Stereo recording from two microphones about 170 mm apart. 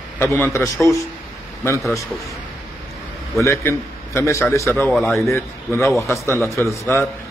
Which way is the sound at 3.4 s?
15° left (ahead or behind).